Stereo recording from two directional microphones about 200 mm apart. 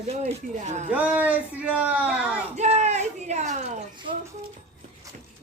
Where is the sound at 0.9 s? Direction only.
10° right (ahead or behind).